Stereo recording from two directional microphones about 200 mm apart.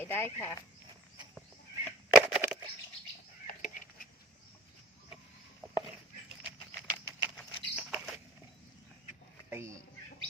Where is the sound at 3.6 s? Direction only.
45° left (ahead or behind).